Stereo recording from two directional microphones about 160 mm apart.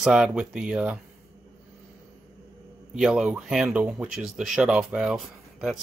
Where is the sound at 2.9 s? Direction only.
5° right (ahead or behind).